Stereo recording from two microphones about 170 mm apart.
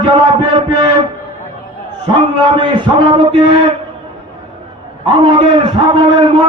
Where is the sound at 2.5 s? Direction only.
30° right (ahead or behind).